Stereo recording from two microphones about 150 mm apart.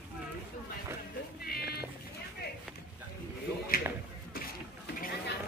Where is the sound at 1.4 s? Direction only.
90° left.